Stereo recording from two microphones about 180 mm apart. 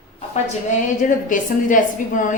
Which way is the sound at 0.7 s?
45° left (ahead or behind).